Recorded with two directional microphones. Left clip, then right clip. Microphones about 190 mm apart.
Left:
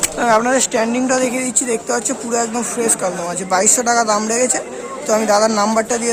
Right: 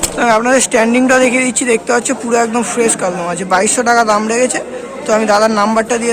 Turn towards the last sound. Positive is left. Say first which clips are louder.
# right 4 dB
turn(degrees=10)  # may be behind; listen again after turning